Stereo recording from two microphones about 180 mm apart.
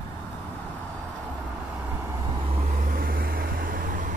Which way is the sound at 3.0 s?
50° right (ahead or behind).